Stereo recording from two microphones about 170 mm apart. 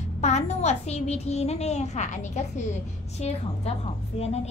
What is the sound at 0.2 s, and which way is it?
A woman's voice, 40° left (ahead or behind).